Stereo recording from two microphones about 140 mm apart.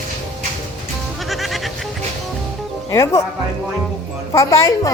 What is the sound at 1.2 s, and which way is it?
Music, centre (ahead or behind).